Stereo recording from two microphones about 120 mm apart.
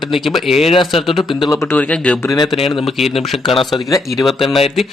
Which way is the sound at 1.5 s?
20° left (ahead or behind).